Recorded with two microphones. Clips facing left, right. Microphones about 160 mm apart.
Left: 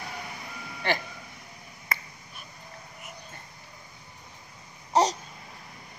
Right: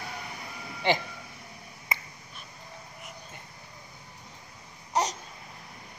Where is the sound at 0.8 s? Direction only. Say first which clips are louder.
Right 2 dB; 15° right (ahead or behind).